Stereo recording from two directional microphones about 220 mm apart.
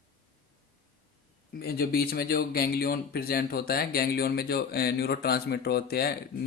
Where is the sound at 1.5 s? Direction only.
45° left (ahead or behind).